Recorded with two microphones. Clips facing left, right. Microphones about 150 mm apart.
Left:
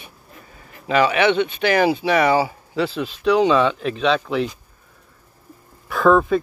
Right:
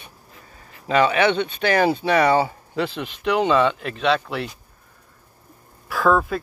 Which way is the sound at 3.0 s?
10° right (ahead or behind).